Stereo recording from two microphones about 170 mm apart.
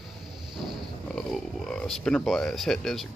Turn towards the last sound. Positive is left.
turn(degrees=0)  # may be behind; listen again after turning